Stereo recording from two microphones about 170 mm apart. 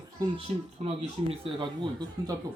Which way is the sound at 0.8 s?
30° right (ahead or behind).